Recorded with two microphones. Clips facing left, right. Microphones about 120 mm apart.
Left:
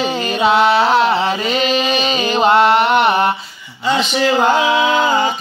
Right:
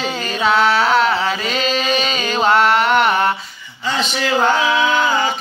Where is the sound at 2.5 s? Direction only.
25° left (ahead or behind).